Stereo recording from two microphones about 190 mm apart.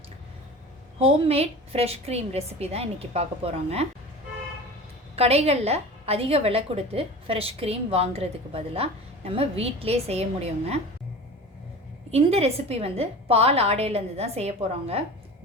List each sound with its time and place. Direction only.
0.9 s a woman's voice: 30° right (ahead or behind)
5.1 s a woman's voice: 35° right (ahead or behind)
12.1 s a woman's voice: 30° right (ahead or behind)